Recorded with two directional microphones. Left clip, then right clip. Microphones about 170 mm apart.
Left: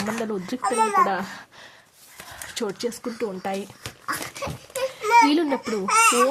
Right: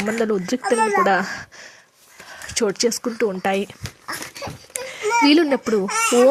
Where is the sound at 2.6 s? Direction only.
25° right (ahead or behind).